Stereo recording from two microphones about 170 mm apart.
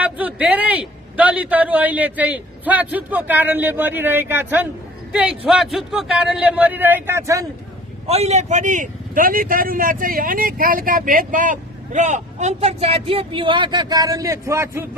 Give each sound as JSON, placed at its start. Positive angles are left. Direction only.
{"t": 0.0, "sound": "a man's voice", "side_deg": -10}
{"t": 8.1, "sound": "a man's voice", "side_deg": -40}